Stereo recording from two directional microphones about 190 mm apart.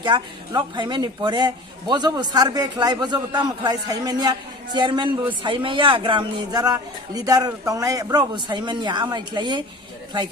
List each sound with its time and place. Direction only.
0.0 s speech: 25° right (ahead or behind)